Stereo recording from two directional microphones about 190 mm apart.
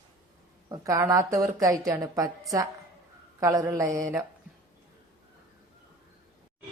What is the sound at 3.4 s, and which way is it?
Speech, 15° right (ahead or behind).